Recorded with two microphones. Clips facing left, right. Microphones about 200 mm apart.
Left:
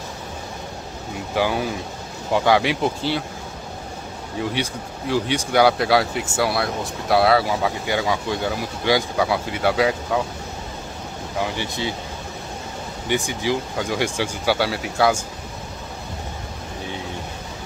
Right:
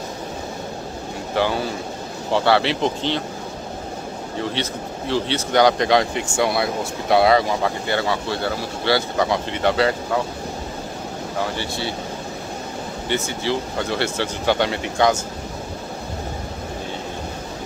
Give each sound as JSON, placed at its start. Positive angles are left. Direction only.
{"t": 1.3, "sound": "speech", "side_deg": 10}
{"t": 4.4, "sound": "speech", "side_deg": 10}
{"t": 11.4, "sound": "speech", "side_deg": 15}
{"t": 13.1, "sound": "speech", "side_deg": 15}